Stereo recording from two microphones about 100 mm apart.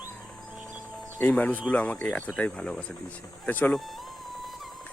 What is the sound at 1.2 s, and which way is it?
Speech, 15° left (ahead or behind).